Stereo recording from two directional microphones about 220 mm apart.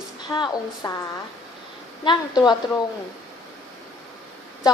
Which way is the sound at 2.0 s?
20° left (ahead or behind).